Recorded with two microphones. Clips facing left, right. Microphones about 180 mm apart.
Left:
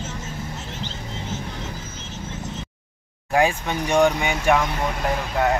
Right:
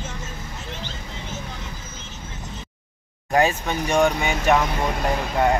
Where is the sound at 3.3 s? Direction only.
10° left (ahead or behind).